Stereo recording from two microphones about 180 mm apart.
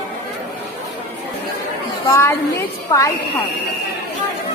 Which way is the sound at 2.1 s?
15° left (ahead or behind).